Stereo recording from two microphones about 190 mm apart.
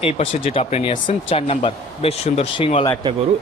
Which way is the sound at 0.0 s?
30° left (ahead or behind).